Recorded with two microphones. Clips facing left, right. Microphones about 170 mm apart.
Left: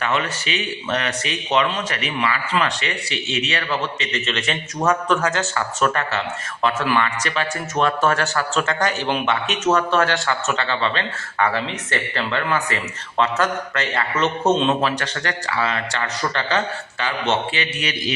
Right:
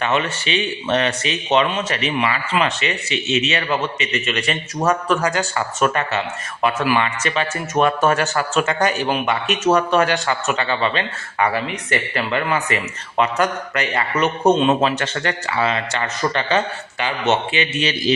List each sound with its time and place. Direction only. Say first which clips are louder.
0.0 s a man's voice: right 2 dB; 25° right (ahead or behind); by 14.8 s 5° right (ahead or behind)
14.8 s a man's voice: right 3 dB; 20° right (ahead or behind)